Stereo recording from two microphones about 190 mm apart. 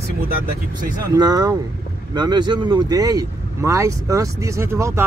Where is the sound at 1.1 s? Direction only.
20° right (ahead or behind).